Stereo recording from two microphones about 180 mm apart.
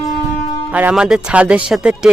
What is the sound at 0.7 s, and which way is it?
A man's voice, 5° right (ahead or behind).